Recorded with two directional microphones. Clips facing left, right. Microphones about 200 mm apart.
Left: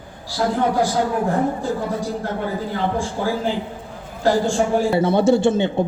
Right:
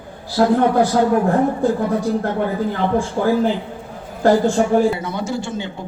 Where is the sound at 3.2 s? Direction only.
50° right (ahead or behind).